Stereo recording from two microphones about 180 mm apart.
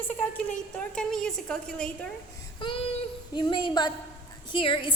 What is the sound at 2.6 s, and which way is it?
A woman's voice, 25° left (ahead or behind).